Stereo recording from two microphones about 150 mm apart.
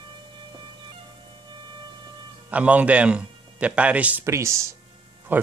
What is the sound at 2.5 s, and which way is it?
A man's voice, 10° right (ahead or behind).